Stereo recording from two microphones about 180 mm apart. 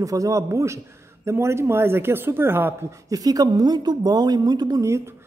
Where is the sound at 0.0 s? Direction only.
20° right (ahead or behind).